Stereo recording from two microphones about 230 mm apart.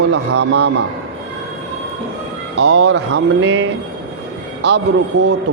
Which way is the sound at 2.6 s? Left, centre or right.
Right.